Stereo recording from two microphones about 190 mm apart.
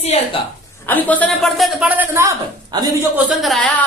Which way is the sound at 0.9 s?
10° left (ahead or behind).